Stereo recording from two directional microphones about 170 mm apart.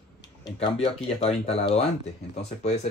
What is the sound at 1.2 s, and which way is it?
Speech, 40° left (ahead or behind).